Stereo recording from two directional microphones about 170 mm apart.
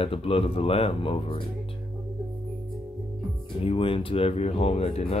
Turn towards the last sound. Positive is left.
turn(degrees=40)  # may be behind; listen again after turning